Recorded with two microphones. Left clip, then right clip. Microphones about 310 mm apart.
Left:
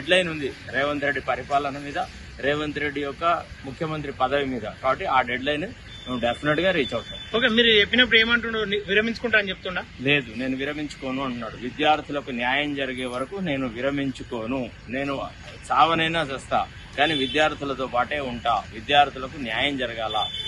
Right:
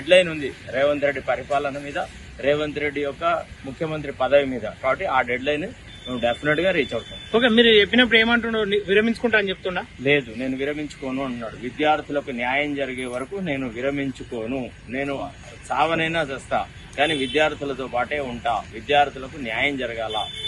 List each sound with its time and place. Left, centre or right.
0.1 s a man's voice: centre
7.3 s a man's voice: centre
10.0 s a man's voice: centre